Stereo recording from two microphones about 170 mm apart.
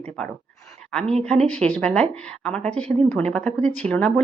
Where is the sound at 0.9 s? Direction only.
5° left (ahead or behind).